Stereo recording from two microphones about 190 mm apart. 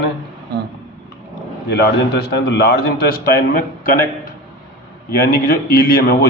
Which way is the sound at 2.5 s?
60° left (ahead or behind).